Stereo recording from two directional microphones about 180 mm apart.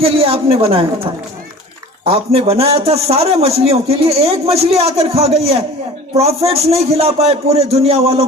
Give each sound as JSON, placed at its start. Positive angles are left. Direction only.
{"t": 0.0, "sound": "a man's voice", "side_deg": -35}
{"t": 2.0, "sound": "a man's voice", "side_deg": -35}